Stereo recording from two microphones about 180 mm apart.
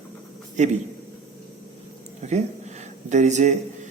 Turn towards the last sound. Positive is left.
turn(degrees=-40)  # may be behind; listen again after turning